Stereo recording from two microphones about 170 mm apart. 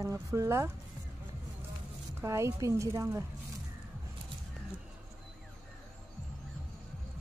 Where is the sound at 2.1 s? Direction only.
15° right (ahead or behind).